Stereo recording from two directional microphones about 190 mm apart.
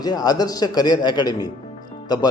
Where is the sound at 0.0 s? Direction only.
20° left (ahead or behind).